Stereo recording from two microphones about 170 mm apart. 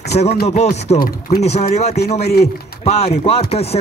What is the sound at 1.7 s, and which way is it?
Speech, 40° left (ahead or behind).